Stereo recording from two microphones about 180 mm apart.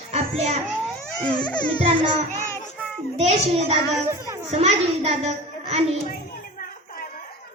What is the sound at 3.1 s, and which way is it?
Speech, 35° right (ahead or behind).